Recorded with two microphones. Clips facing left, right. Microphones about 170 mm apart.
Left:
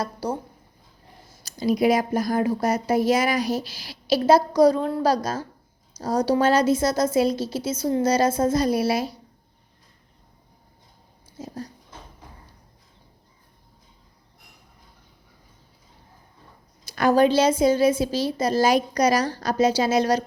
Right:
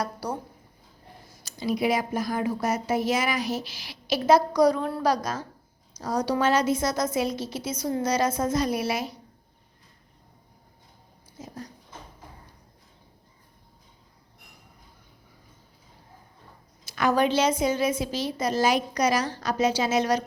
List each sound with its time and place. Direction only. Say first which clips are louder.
0.0 s speech: left 3 dB; 25° left (ahead or behind)
1.5 s a woman's voice: left 5 dB; 40° left (ahead or behind)
11.3 s a sound: left 5 dB; 30° left (ahead or behind)
16.9 s a woman's voice: left 5 dB; 35° left (ahead or behind)